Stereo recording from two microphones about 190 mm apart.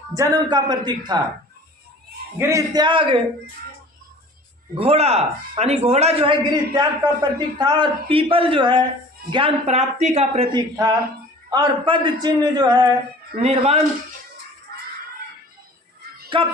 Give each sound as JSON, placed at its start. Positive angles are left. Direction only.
{"t": 0.1, "sound": "a man's voice", "side_deg": -20}
{"t": 2.4, "sound": "a man's voice", "side_deg": -15}
{"t": 4.8, "sound": "a man's voice", "side_deg": -30}
{"t": 13.4, "sound": "speech", "side_deg": -35}
{"t": 16.3, "sound": "a man's voice", "side_deg": -25}